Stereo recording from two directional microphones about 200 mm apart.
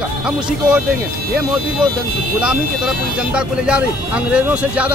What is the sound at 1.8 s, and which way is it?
Speech, 5° right (ahead or behind).